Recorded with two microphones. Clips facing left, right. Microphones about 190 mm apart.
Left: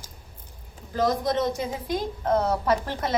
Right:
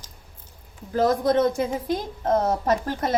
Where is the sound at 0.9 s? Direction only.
55° right (ahead or behind).